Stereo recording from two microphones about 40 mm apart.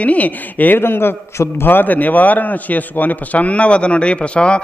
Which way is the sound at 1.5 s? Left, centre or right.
Left.